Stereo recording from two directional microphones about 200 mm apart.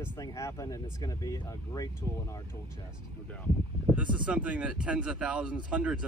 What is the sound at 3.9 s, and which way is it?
Speech, 5° right (ahead or behind).